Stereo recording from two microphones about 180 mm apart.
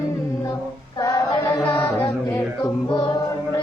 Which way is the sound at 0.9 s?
20° left (ahead or behind).